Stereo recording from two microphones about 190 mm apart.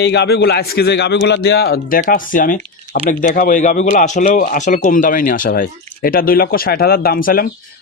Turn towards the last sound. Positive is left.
turn(degrees=50)  # may be behind; listen again after turning